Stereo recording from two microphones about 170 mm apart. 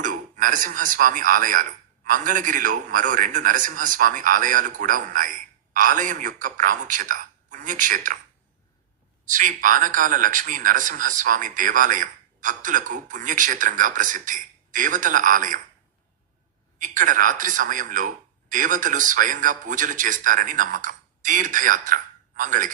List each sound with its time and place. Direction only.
0.0 s a man's voice: 50° right (ahead or behind)
9.3 s a man's voice: 50° right (ahead or behind)
16.7 s a man's voice: 50° right (ahead or behind)